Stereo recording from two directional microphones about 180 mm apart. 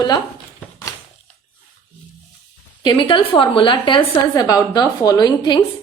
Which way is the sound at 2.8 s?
25° left (ahead or behind).